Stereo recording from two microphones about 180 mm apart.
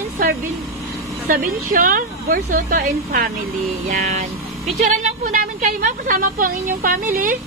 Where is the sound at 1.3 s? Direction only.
50° right (ahead or behind).